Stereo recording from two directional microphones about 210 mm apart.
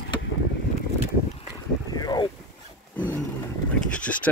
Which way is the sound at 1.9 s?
20° left (ahead or behind).